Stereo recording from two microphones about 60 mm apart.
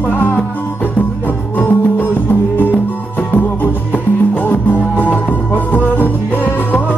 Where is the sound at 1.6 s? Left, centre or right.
Left.